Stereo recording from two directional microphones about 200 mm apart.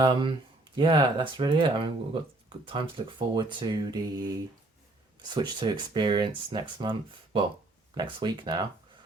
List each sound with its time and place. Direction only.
0.0 s speech: 25° right (ahead or behind)
7.9 s speech: 20° right (ahead or behind)